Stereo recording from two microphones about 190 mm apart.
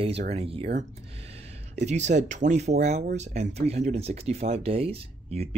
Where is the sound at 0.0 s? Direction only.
30° right (ahead or behind).